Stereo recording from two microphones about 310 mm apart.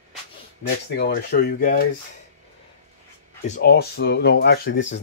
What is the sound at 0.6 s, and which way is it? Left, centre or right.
Speech, left.